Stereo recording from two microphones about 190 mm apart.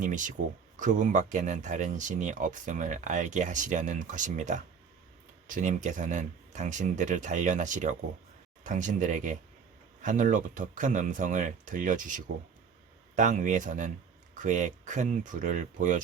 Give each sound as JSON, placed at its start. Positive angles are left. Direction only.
{"t": 0.0, "sound": "speech", "side_deg": -40}